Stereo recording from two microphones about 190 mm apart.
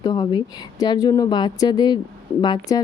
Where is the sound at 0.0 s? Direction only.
20° left (ahead or behind).